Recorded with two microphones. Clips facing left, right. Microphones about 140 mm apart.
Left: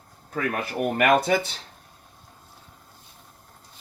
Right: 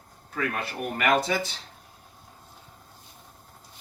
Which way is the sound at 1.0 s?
55° left (ahead or behind).